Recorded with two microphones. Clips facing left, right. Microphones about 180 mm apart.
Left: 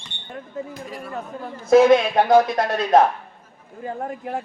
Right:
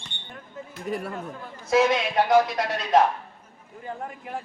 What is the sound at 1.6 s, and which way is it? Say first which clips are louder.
Speech: left 8 dB; 55° left (ahead or behind).